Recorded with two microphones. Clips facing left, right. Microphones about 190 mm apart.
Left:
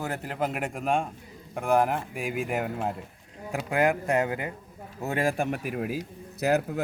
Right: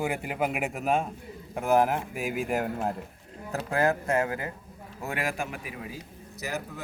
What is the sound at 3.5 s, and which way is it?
A man's voice, 15° left (ahead or behind).